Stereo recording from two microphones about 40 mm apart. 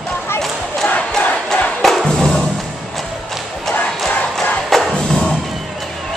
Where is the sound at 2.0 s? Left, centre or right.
Centre.